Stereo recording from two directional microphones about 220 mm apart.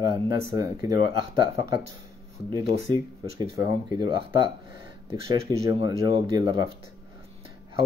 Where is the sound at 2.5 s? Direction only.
20° right (ahead or behind).